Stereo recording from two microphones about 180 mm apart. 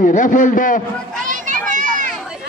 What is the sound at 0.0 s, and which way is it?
Speech, 45° left (ahead or behind).